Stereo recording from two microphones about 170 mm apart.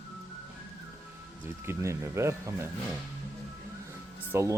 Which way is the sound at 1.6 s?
15° right (ahead or behind).